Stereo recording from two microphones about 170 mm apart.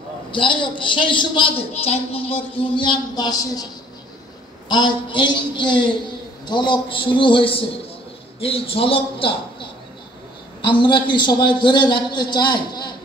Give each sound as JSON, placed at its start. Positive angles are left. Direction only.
{"t": 0.3, "sound": "a woman's voice", "side_deg": 30}
{"t": 4.6, "sound": "a woman's voice", "side_deg": 25}